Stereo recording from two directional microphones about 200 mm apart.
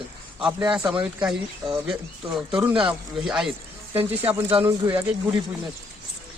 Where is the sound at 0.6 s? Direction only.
20° right (ahead or behind).